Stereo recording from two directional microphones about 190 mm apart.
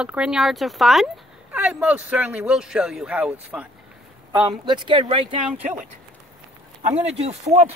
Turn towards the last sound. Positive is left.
turn(degrees=-35)  # may be behind; listen again after turning